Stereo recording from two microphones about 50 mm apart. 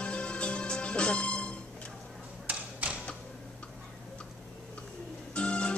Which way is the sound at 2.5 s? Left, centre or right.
Right.